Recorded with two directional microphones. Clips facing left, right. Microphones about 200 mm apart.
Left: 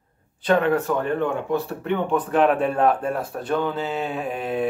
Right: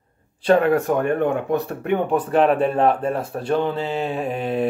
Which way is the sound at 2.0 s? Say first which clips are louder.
Right 1 dB; 35° right (ahead or behind).